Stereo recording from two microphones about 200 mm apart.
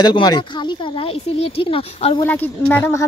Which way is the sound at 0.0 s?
20° left (ahead or behind).